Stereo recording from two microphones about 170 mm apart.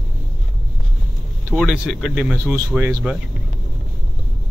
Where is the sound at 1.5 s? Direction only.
Centre (ahead or behind).